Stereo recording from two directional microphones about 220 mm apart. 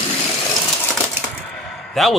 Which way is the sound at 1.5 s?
Centre (ahead or behind).